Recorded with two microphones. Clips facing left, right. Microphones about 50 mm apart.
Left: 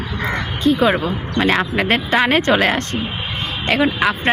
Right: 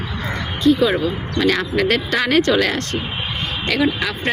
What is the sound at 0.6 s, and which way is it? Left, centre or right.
Speech, left.